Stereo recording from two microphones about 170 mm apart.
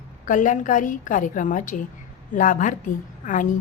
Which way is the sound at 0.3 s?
50° left (ahead or behind).